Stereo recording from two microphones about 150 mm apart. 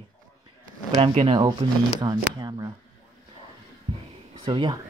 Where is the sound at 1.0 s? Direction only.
35° right (ahead or behind).